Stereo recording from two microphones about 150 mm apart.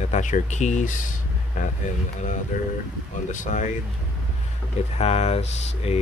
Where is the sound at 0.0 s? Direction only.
50° left (ahead or behind).